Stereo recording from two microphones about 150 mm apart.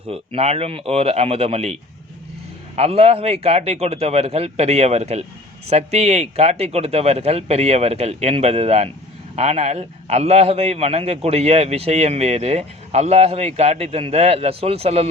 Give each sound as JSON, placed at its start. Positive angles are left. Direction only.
{"t": 0.1, "sound": "a man's voice", "side_deg": -40}